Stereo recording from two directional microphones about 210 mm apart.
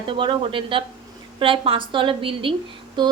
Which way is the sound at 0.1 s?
25° right (ahead or behind).